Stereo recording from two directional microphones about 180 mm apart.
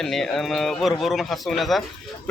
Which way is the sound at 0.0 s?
Centre (ahead or behind).